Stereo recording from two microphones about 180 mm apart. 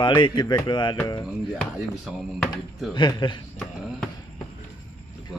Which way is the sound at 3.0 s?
25° left (ahead or behind).